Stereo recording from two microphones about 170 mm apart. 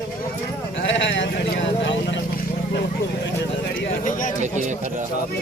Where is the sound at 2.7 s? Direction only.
75° left (ahead or behind).